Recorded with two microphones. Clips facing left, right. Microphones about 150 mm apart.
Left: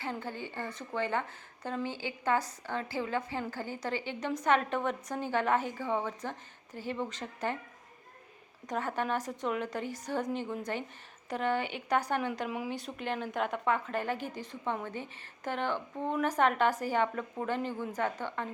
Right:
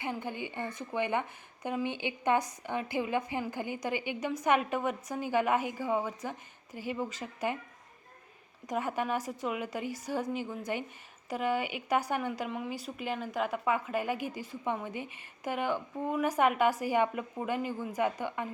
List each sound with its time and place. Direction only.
0.0 s speech: 15° right (ahead or behind)
8.6 s speech: 10° right (ahead or behind)